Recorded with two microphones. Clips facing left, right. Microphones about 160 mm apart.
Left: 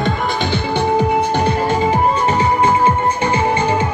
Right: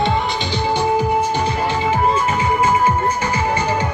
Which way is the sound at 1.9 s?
35° left (ahead or behind).